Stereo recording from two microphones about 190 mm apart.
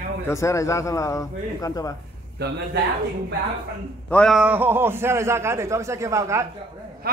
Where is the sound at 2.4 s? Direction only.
65° right (ahead or behind).